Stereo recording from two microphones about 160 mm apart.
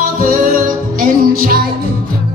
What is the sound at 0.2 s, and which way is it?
Music, 60° right (ahead or behind).